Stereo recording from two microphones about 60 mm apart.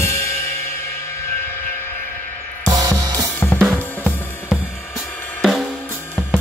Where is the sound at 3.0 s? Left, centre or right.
Right.